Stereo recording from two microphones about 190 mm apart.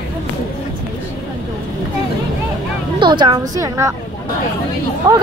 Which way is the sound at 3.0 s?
25° right (ahead or behind).